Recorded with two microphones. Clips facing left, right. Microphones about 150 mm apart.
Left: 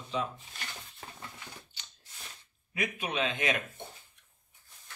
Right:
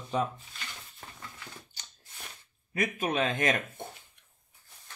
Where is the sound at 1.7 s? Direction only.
45° right (ahead or behind).